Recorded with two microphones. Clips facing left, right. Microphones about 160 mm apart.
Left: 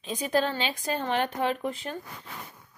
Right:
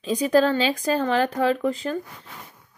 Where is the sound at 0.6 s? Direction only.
90° right.